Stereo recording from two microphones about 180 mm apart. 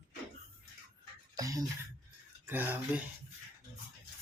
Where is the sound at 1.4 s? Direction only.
20° right (ahead or behind).